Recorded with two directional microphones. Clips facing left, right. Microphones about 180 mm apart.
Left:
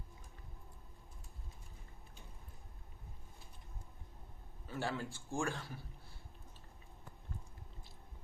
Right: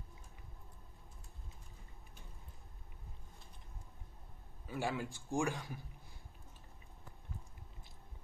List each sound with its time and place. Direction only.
4.6 s a man's voice: 15° right (ahead or behind)